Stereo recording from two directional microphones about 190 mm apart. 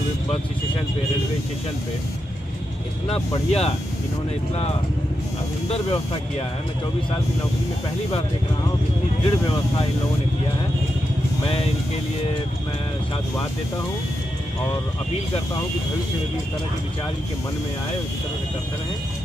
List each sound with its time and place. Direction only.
3.4 s speech: 35° left (ahead or behind)
5.7 s speech: 30° left (ahead or behind)
9.2 s speech: 30° left (ahead or behind)
11.4 s speech: 30° left (ahead or behind)